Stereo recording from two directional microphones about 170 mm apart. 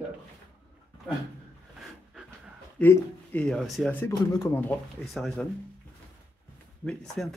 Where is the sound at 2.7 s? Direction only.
10° left (ahead or behind).